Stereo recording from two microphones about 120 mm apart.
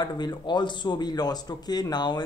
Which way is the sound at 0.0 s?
35° left (ahead or behind).